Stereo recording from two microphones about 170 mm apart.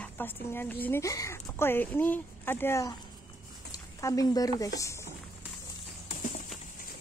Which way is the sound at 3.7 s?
20° left (ahead or behind).